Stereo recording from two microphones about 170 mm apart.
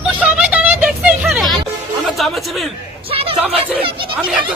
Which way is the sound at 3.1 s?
35° right (ahead or behind).